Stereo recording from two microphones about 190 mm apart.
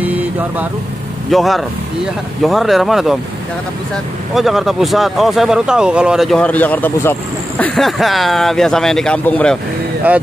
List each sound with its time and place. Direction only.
0.0 s music: 10° right (ahead or behind)
1.3 s speech: centre (ahead or behind)
4.3 s speech: centre (ahead or behind)
10.0 s speech: 10° right (ahead or behind)